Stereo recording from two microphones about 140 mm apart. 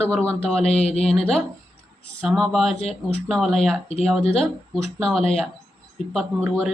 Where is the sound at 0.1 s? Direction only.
5° left (ahead or behind).